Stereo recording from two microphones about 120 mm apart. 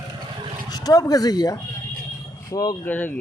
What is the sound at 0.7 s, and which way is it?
Speech, 30° left (ahead or behind).